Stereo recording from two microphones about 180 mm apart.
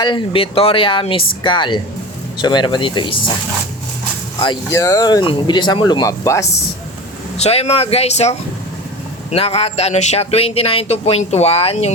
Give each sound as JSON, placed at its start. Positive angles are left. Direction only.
{"t": 0.0, "sound": "speech", "side_deg": 25}
{"t": 4.7, "sound": "speech", "side_deg": 15}
{"t": 7.3, "sound": "speech", "side_deg": 35}